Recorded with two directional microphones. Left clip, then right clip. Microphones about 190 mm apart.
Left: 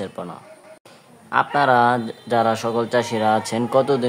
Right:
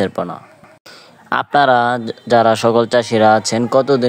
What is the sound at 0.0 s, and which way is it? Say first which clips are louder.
Speech: right 11 dB; 35° right (ahead or behind).